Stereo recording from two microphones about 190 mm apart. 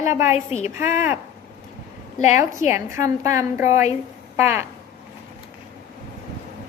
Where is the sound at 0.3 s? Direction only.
35° left (ahead or behind).